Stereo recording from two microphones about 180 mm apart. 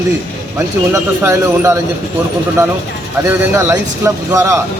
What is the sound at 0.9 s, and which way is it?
Speech, 15° right (ahead or behind).